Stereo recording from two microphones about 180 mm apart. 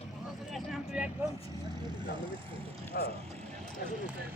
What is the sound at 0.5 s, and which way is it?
Vehicle, centre (ahead or behind).